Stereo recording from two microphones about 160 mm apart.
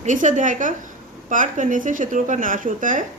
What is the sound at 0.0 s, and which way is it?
A woman's voice, 50° right (ahead or behind).